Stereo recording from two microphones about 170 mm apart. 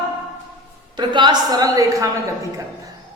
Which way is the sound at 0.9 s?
25° right (ahead or behind).